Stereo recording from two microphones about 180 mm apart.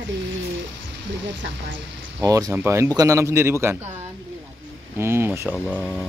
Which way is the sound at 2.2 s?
20° right (ahead or behind).